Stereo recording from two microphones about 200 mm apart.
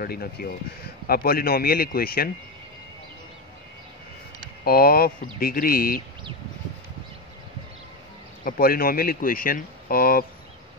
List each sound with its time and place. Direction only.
0.0 s speech: 50° left (ahead or behind)
4.6 s speech: 50° left (ahead or behind)
8.5 s speech: 45° left (ahead or behind)